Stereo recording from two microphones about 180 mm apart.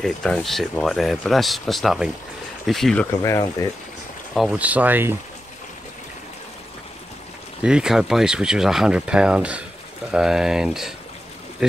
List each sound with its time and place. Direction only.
0.0 s speech: centre (ahead or behind)
3.2 s speech: 15° left (ahead or behind)
4.3 s speech: centre (ahead or behind)
7.6 s speech: 5° right (ahead or behind)